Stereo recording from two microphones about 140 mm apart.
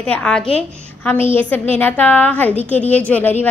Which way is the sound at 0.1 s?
5° left (ahead or behind).